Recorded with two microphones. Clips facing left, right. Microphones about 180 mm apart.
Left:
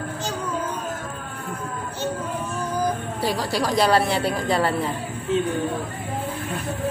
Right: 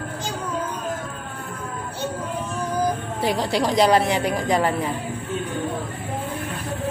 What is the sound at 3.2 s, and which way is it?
A woman's voice, 20° right (ahead or behind).